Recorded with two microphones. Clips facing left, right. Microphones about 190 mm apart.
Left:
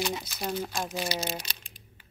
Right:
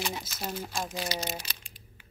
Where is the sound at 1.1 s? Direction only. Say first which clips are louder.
Left 2 dB; 10° right (ahead or behind).